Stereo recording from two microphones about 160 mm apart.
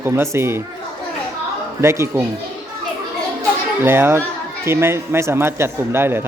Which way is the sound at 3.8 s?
15° right (ahead or behind).